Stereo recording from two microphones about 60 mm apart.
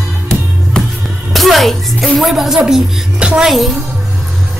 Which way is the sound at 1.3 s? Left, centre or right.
Centre.